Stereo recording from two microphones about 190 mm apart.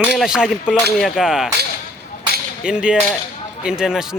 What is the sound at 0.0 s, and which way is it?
Speech, 5° right (ahead or behind).